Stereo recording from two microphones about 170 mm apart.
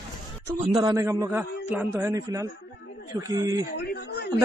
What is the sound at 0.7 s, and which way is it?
A man's voice, 20° right (ahead or behind).